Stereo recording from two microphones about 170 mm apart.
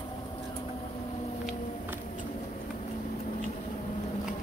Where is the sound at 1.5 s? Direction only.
10° right (ahead or behind).